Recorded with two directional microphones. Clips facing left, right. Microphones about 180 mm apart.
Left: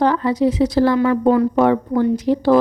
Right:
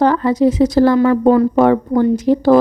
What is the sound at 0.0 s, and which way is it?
Speech, 45° right (ahead or behind).